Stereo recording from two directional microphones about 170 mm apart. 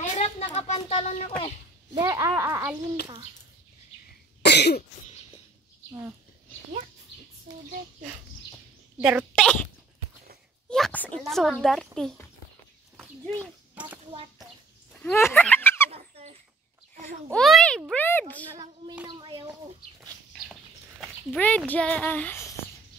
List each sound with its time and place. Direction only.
0.0 s speech: 40° left (ahead or behind)
2.0 s speech: 20° right (ahead or behind)
4.4 s cough: 80° left
8.9 s speech: 5° right (ahead or behind)
10.7 s a child's voice: 5° left (ahead or behind)
15.0 s a sound: 10° left (ahead or behind)
15.9 s a sound: 35° right (ahead or behind)
17.3 s a child's voice: centre (ahead or behind)
19.0 s speech: 25° right (ahead or behind)
21.0 s speech: 10° left (ahead or behind)